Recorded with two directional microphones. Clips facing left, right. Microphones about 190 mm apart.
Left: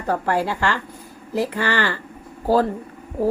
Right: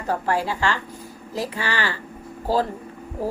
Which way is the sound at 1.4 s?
55° left (ahead or behind).